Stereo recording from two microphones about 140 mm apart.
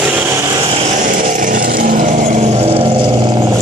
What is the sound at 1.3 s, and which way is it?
Vehicle, 65° right (ahead or behind).